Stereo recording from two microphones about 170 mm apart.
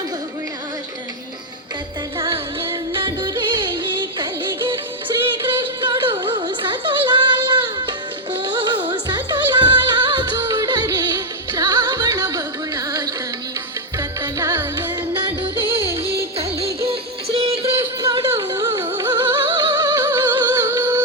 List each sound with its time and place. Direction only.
2.1 s music: 30° right (ahead or behind)
14.2 s music: 15° right (ahead or behind)
18.0 s music: 25° right (ahead or behind)